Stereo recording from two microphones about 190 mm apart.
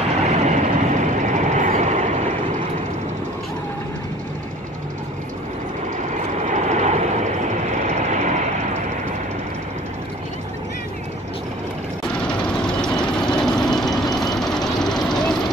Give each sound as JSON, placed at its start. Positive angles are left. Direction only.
{"t": 0.2, "sound": "vehicle", "side_deg": -35}
{"t": 6.5, "sound": "vehicle", "side_deg": -40}
{"t": 8.1, "sound": "vehicle", "side_deg": -40}
{"t": 12.6, "sound": "vehicle", "side_deg": 5}